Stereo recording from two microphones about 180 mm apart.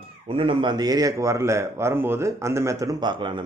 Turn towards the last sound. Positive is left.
turn(degrees=-25)  # may be behind; listen again after turning